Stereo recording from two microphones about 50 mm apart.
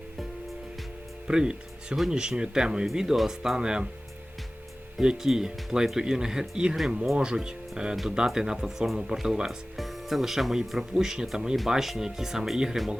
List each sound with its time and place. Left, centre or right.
1.3 s speech: centre
4.9 s speech: centre
9.7 s speech: centre